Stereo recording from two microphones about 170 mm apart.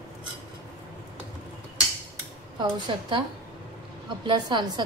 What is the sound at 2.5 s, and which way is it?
Speech, 25° right (ahead or behind).